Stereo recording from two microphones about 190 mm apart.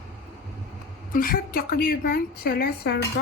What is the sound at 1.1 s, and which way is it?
A woman's voice, 50° left (ahead or behind).